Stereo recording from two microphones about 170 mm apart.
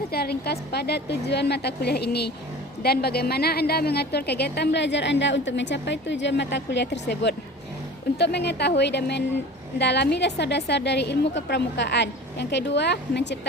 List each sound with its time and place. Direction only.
0.1 s a woman's voice: 65° left (ahead or behind); by 13.4 s 85° left